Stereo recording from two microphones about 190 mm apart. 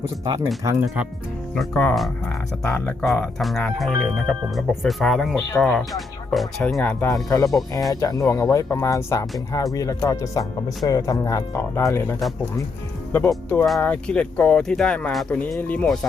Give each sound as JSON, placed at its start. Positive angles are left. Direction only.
{"t": 0.6, "sound": "speech", "side_deg": -10}
{"t": 1.5, "sound": "speech", "side_deg": 5}
{"t": 7.1, "sound": "speech", "side_deg": 15}
{"t": 13.1, "sound": "speech", "side_deg": 10}